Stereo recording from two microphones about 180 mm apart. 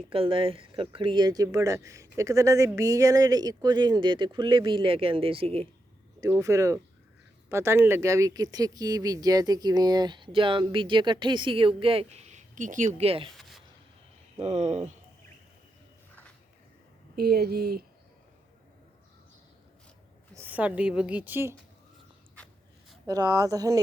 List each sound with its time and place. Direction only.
0.1 s speech: 30° right (ahead or behind)
6.1 s speech: 20° right (ahead or behind); by 12.9 s 45° right (ahead or behind)
13.0 s speech: 30° right (ahead or behind)
13.3 s a sound: centre (ahead or behind)
14.3 s speech: 35° right (ahead or behind)
17.2 s speech: 60° right (ahead or behind)
20.3 s a woman's voice: 10° right (ahead or behind)
23.0 s speech: 20° right (ahead or behind)